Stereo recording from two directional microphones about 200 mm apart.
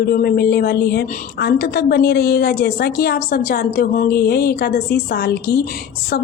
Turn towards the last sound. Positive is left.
turn(degrees=50)  # may be behind; listen again after turning